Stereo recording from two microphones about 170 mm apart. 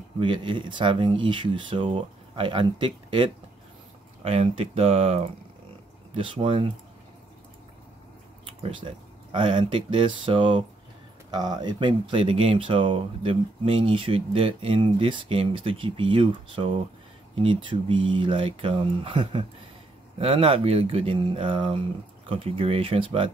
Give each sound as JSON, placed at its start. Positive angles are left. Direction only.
{"t": 0.2, "sound": "speech", "side_deg": -30}
{"t": 8.5, "sound": "speech", "side_deg": -30}